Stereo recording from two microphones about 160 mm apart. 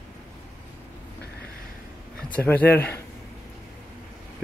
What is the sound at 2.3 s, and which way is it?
Speech, 10° left (ahead or behind).